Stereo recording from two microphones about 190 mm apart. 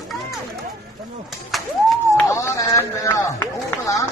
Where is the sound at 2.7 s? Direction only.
15° left (ahead or behind).